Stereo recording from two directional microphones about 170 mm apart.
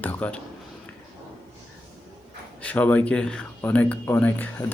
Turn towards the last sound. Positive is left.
turn(degrees=10)  # may be behind; listen again after turning